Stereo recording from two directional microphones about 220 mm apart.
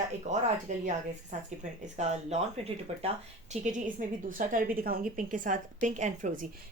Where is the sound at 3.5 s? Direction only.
35° right (ahead or behind).